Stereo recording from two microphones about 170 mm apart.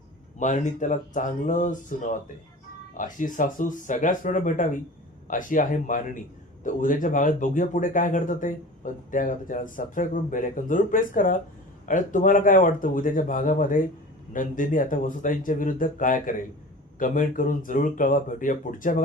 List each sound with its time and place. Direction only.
0.3 s speech: 45° left (ahead or behind)